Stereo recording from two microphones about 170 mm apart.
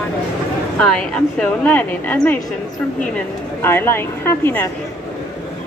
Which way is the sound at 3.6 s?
15° left (ahead or behind).